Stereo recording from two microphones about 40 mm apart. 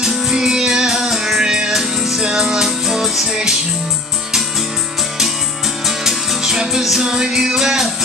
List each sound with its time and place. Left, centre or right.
0.0 s music: centre
1.4 s music: right
1.7 s music: centre
5.9 s music: centre
7.1 s music: centre